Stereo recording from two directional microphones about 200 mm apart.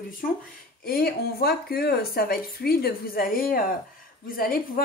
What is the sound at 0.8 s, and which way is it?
Speech, 50° left (ahead or behind).